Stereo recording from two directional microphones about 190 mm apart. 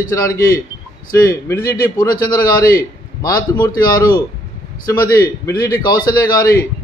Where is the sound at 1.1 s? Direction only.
15° left (ahead or behind).